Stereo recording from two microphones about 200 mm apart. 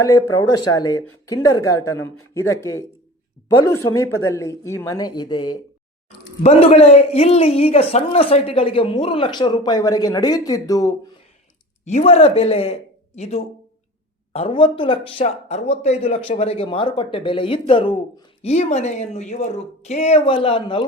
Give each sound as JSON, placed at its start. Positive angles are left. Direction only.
{"t": 0.0, "sound": "a man's voice", "side_deg": 15}
{"t": 11.9, "sound": "a man's voice", "side_deg": 35}
{"t": 18.5, "sound": "speech", "side_deg": 35}